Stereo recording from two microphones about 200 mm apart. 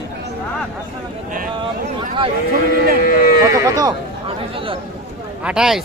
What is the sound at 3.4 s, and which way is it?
Speech, 15° right (ahead or behind).